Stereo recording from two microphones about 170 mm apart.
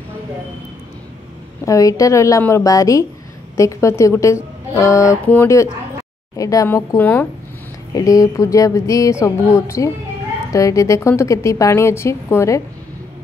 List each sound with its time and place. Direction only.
1.7 s a woman's voice: 20° left (ahead or behind)